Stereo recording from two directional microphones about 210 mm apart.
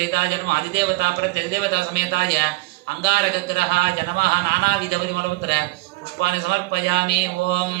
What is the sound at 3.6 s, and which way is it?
Speech, 50° right (ahead or behind).